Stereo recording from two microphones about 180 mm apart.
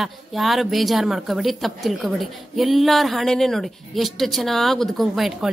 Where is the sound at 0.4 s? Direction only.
Centre (ahead or behind).